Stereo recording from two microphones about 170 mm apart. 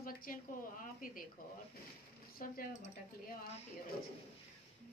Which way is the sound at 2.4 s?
55° left (ahead or behind).